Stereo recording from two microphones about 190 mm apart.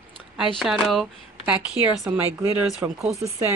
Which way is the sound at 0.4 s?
Centre (ahead or behind).